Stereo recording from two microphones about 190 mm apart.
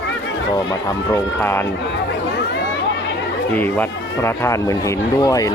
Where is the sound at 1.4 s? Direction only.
10° left (ahead or behind).